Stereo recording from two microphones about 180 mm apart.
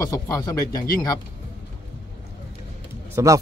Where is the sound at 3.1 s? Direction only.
15° right (ahead or behind).